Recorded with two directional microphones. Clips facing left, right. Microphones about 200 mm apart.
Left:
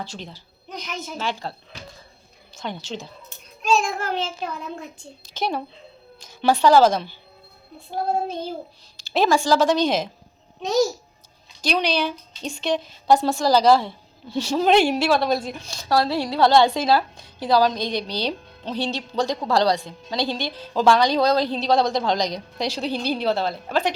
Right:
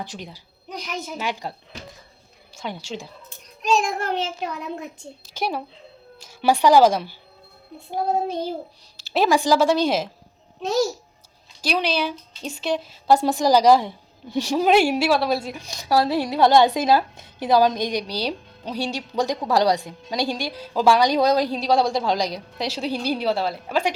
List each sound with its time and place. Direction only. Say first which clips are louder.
0.0 s a woman's voice: even; 15° right (ahead or behind)
11.6 s a woman's voice: left 1 dB; 5° right (ahead or behind)